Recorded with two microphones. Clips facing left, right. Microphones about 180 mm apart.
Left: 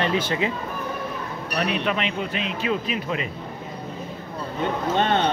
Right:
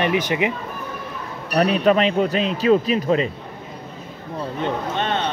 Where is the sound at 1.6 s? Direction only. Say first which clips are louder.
Right 8 dB; 40° right (ahead or behind).